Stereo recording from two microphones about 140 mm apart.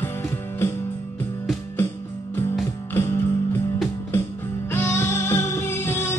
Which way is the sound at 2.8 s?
20° left (ahead or behind).